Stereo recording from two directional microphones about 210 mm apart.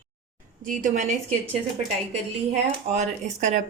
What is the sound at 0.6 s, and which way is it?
Speech, 40° right (ahead or behind).